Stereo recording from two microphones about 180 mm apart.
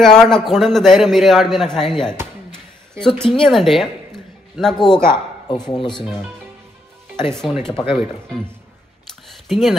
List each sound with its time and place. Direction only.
0.0 s a man's voice: 5° left (ahead or behind)
2.5 s a sound: 5° left (ahead or behind)
3.4 s speech: centre (ahead or behind)
5.1 s speech: 25° left (ahead or behind)
7.2 s a man's voice: centre (ahead or behind)
9.5 s a man's voice: centre (ahead or behind)